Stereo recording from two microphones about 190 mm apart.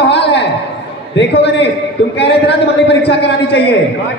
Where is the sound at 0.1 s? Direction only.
65° left (ahead or behind).